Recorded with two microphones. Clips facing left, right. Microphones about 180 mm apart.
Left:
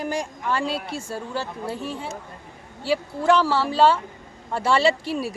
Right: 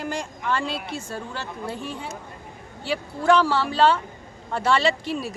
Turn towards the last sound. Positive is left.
turn(degrees=10)  # may be behind; listen again after turning